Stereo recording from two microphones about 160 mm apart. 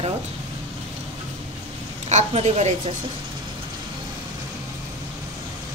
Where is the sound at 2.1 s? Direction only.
45° right (ahead or behind).